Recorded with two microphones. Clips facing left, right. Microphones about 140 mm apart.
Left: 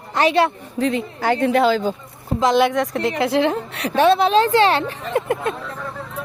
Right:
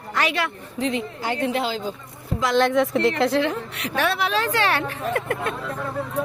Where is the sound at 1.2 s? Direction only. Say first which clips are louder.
Left 10 dB; 55° left (ahead or behind).